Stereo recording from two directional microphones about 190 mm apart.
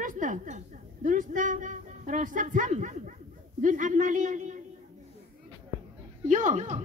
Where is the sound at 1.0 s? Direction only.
45° right (ahead or behind).